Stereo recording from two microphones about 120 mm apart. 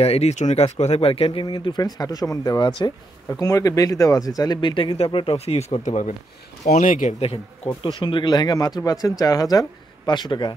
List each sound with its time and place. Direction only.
0.0 s speech: 60° left (ahead or behind); by 4.9 s 40° left (ahead or behind)
4.9 s speech: 50° left (ahead or behind); by 7.2 s 80° left
7.2 s speech: 55° left (ahead or behind)
8.0 s speech: 40° left (ahead or behind)